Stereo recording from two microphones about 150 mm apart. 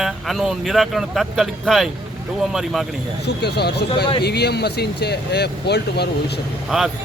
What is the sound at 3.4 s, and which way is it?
Speech, 90° left.